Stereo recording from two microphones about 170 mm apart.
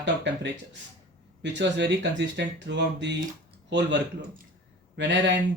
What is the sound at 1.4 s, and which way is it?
Speech, 90° right.